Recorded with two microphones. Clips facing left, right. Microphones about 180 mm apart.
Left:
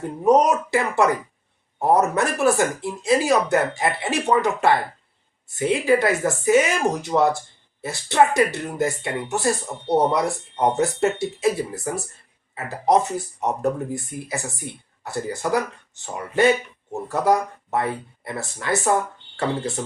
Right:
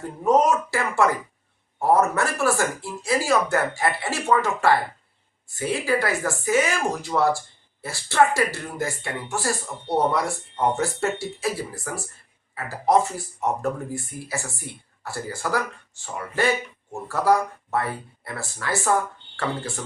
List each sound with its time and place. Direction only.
0.3 s speech: 20° left (ahead or behind)